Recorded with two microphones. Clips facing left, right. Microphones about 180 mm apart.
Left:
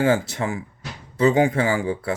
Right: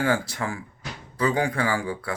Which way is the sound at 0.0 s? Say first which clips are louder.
Left 5 dB; 25° left (ahead or behind).